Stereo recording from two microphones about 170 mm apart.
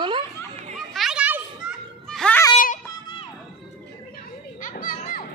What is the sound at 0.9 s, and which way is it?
Children playing, 5° right (ahead or behind).